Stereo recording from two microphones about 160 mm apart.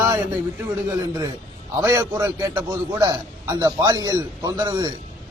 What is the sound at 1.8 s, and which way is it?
A man's voice, 20° right (ahead or behind).